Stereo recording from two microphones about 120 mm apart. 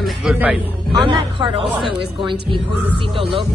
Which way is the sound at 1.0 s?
45° right (ahead or behind).